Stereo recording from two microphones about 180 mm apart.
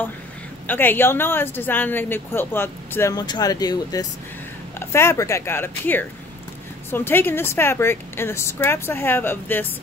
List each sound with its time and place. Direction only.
0.7 s speech: 10° left (ahead or behind)